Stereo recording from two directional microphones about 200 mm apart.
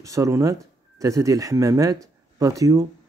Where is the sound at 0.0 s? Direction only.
15° right (ahead or behind).